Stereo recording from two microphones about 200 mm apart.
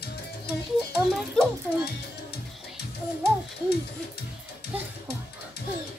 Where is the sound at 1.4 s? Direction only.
5° left (ahead or behind).